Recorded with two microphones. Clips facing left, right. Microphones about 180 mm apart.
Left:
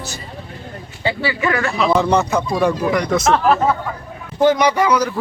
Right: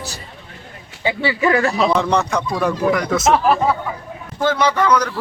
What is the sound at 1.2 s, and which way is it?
Speech, 30° right (ahead or behind).